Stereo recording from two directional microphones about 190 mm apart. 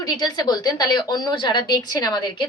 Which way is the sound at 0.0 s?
20° left (ahead or behind).